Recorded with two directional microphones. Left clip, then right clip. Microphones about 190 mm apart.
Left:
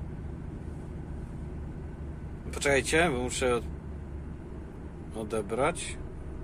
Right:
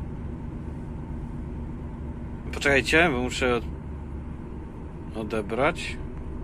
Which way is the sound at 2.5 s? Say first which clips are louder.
Right 5 dB; 15° left (ahead or behind).